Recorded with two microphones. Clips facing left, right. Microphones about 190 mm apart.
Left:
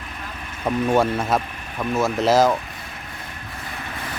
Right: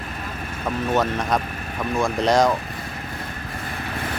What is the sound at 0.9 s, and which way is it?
Speech, 10° left (ahead or behind).